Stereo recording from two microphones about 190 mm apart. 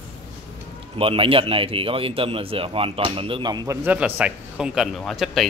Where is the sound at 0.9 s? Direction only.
30° right (ahead or behind).